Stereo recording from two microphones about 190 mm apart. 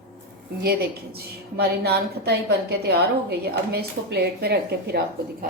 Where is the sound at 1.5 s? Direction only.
55° right (ahead or behind).